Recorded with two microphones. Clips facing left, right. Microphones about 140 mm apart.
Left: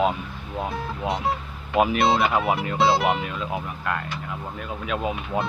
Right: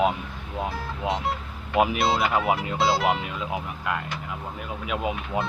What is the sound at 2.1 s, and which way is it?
Speech, 15° left (ahead or behind).